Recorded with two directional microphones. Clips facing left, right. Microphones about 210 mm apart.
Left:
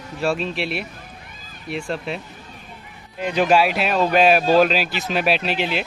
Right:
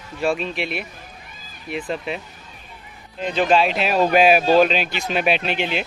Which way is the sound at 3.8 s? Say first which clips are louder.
Right 3 dB; 5° right (ahead or behind).